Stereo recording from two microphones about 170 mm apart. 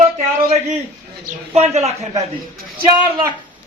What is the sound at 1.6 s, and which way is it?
Speech, 40° right (ahead or behind).